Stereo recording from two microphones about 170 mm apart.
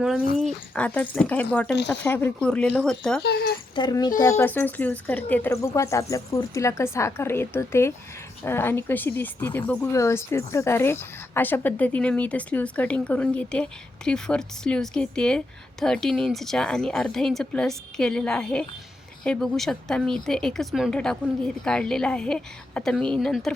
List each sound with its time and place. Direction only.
0.3 s speech: 5° left (ahead or behind)
3.2 s speech: 70° left (ahead or behind)
3.8 s a woman's voice: 25° left (ahead or behind); by 23.6 s centre (ahead or behind)